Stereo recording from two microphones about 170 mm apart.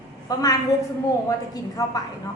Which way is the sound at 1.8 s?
20° left (ahead or behind).